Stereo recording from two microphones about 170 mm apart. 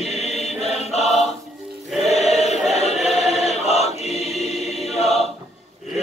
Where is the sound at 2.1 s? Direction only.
40° left (ahead or behind).